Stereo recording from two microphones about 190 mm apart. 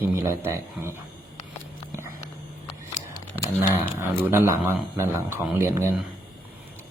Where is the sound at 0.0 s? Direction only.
15° right (ahead or behind).